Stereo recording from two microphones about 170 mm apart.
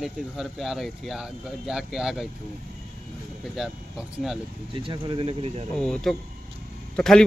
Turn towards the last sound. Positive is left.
turn(degrees=5)  # may be behind; listen again after turning